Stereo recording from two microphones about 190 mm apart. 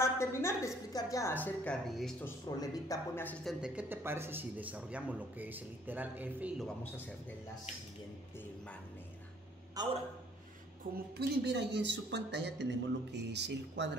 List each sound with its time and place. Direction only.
0.0 s a woman's voice: 15° left (ahead or behind)
2.4 s speech: 20° left (ahead or behind)
3.4 s a man's voice: 5° right (ahead or behind)
6.8 s a woman's voice: 10° left (ahead or behind)
9.8 s a man's voice: 20° right (ahead or behind)
11.1 s speech: 65° right (ahead or behind)